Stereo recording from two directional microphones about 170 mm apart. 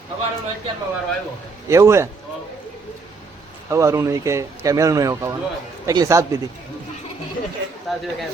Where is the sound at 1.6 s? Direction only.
15° right (ahead or behind).